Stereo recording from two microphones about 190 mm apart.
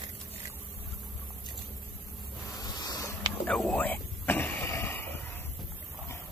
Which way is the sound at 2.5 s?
20° left (ahead or behind).